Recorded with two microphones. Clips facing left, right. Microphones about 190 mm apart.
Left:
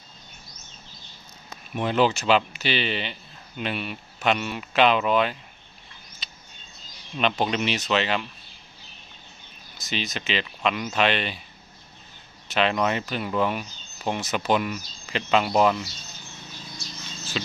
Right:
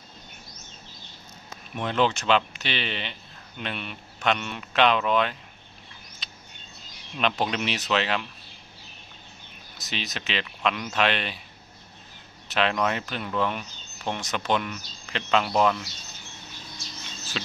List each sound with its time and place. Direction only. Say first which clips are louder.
1.8 s speech: left 3 dB; 5° left (ahead or behind)
6.2 s a sound: even; centre (ahead or behind)
7.2 s speech: left 2 dB; centre (ahead or behind)
9.8 s speech: left 4 dB; centre (ahead or behind)
12.4 s speech: left 2 dB; centre (ahead or behind)